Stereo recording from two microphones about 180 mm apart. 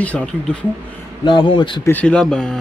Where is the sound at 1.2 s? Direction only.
25° left (ahead or behind).